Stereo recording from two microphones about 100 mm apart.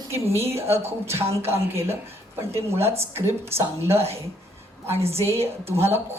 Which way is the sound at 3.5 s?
25° right (ahead or behind).